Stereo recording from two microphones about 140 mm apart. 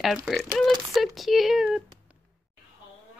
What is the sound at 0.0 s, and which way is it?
Speech, 5° right (ahead or behind).